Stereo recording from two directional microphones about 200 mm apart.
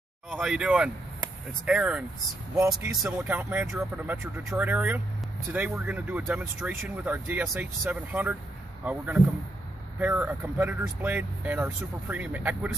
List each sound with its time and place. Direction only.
0.3 s speech: 5° right (ahead or behind)